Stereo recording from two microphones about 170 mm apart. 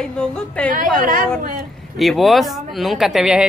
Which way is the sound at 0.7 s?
50° right (ahead or behind).